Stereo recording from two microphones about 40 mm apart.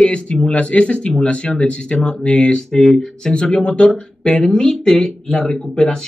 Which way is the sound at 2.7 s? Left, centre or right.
Centre.